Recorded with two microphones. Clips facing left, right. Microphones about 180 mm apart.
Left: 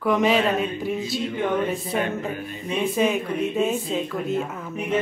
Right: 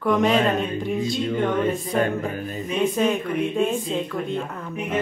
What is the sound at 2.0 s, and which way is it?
Music, 40° right (ahead or behind).